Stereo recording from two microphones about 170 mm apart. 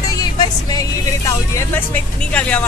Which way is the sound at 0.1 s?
25° left (ahead or behind).